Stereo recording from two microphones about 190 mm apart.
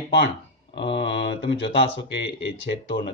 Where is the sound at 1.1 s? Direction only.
65° left (ahead or behind).